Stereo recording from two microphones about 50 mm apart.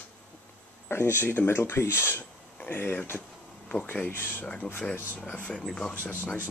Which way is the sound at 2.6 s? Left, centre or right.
Left.